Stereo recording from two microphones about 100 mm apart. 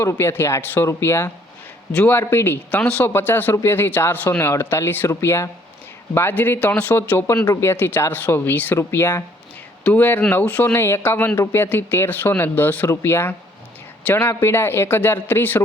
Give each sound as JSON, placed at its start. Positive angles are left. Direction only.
{"t": 0.0, "sound": "speech", "side_deg": 25}